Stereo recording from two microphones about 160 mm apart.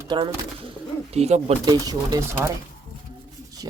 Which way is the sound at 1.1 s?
40° right (ahead or behind).